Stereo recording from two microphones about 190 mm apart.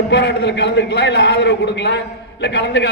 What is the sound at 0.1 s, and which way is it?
A man's voice, 65° left (ahead or behind).